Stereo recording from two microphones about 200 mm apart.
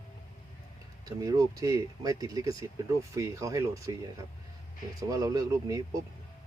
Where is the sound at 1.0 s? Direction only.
15° right (ahead or behind).